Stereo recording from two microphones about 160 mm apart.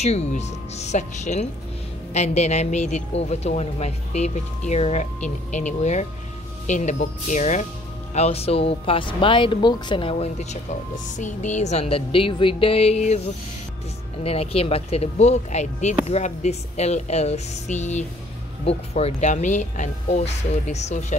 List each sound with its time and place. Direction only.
0.0 s speech: 45° left (ahead or behind)